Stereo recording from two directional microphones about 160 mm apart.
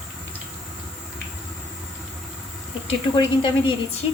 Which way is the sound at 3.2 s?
30° left (ahead or behind).